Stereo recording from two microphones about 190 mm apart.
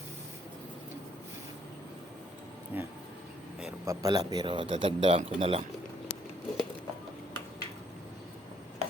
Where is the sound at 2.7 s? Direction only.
10° right (ahead or behind).